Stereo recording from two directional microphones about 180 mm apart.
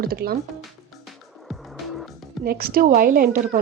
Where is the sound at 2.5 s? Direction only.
55° right (ahead or behind).